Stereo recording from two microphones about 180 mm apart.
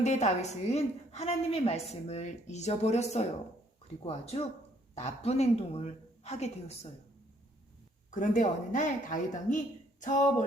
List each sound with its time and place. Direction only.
0.0 s a woman's voice: 40° left (ahead or behind)
8.1 s a woman's voice: 45° left (ahead or behind)